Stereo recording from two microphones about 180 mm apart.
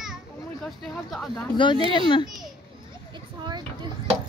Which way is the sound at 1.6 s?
25° left (ahead or behind).